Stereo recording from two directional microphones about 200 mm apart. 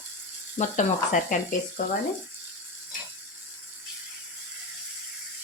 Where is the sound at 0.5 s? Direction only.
35° left (ahead or behind).